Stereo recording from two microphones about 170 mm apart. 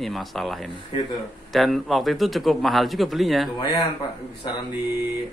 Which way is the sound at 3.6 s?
20° left (ahead or behind).